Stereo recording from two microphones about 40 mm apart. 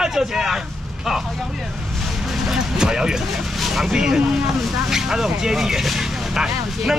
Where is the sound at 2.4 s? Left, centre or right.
Centre.